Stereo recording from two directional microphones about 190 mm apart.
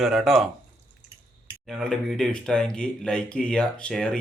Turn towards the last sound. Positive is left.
turn(degrees=5)  # may be behind; listen again after turning